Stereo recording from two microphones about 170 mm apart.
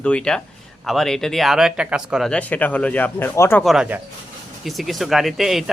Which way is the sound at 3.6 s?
5° right (ahead or behind).